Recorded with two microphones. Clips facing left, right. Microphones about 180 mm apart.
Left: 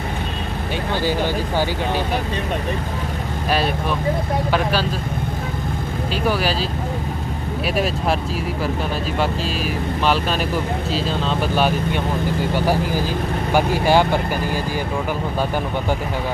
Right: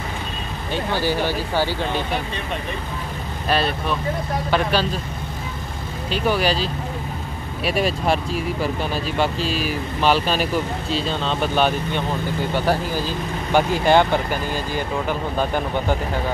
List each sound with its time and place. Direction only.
1.0 s speech: 15° left (ahead or behind)
3.4 s speech: 10° left (ahead or behind)
6.3 s speech: 5° left (ahead or behind)
9.2 s speech: centre (ahead or behind)